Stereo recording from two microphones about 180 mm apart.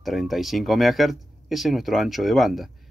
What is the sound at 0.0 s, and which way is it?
Speech, centre (ahead or behind).